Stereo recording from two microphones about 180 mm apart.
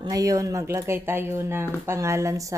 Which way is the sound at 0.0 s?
20° right (ahead or behind).